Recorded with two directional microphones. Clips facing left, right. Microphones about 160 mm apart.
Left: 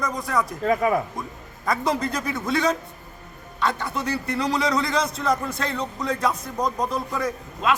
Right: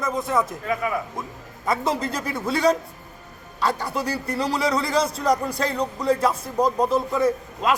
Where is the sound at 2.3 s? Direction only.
30° right (ahead or behind).